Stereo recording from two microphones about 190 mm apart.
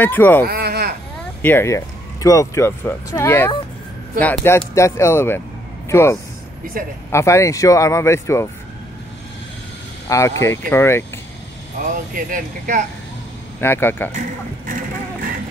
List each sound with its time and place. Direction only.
0.0 s speech: 10° left (ahead or behind)
0.5 s sheep: 55° right (ahead or behind)
1.4 s speech: 10° left (ahead or behind)
10.0 s speech: 15° left (ahead or behind)
12.3 s speech: 45° right (ahead or behind)
13.6 s speech: 10° left (ahead or behind)
14.7 s a sound: 45° right (ahead or behind)